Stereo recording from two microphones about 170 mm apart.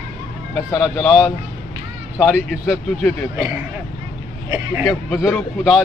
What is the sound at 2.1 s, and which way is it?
Speech, 5° right (ahead or behind).